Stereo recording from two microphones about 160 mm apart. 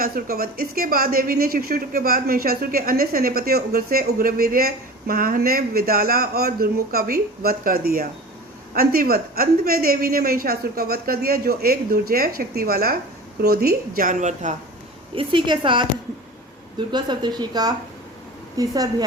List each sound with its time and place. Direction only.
0.0 s a woman's voice: 65° right (ahead or behind); by 14.5 s 50° right (ahead or behind)
15.1 s a woman's voice: 30° right (ahead or behind)
16.9 s a woman's voice: 25° right (ahead or behind)